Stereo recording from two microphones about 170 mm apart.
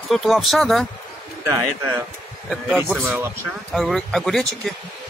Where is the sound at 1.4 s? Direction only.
15° right (ahead or behind).